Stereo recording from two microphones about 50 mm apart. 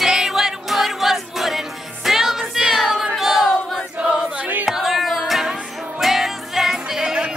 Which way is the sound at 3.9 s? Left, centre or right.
Right.